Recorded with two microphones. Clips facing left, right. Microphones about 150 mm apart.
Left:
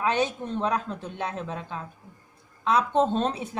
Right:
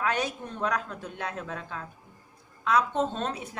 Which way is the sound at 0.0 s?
25° left (ahead or behind).